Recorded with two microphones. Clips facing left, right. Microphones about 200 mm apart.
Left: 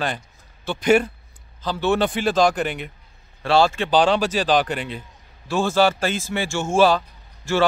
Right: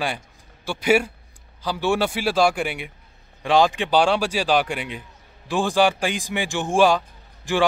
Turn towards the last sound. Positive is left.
turn(degrees=-15)  # may be behind; listen again after turning